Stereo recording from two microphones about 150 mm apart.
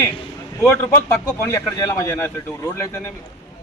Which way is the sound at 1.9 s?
20° left (ahead or behind).